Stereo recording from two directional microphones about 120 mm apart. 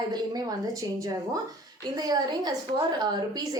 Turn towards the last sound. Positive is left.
turn(degrees=-30)  # may be behind; listen again after turning